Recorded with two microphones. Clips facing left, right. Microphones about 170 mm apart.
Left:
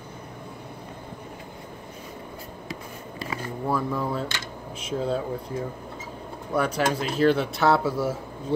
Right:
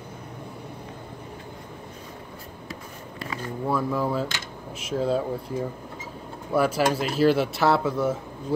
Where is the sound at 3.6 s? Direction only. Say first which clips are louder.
Right 2 dB; centre (ahead or behind).